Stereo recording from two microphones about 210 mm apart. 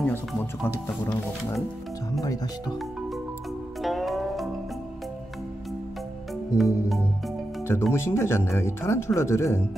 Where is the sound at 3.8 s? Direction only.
Centre (ahead or behind).